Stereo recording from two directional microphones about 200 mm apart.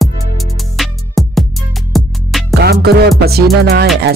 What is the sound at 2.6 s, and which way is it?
Music, 55° right (ahead or behind).